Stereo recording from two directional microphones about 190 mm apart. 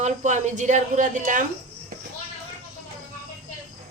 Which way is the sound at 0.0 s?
40° right (ahead or behind).